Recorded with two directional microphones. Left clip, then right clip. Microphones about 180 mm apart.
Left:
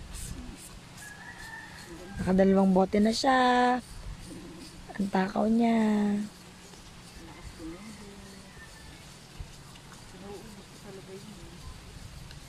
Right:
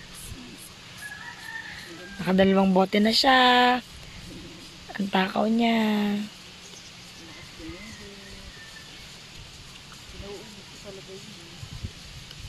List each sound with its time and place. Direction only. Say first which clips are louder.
2.2 s speech: right 3 dB; centre (ahead or behind)
4.9 s speech: right 4 dB; 5° left (ahead or behind)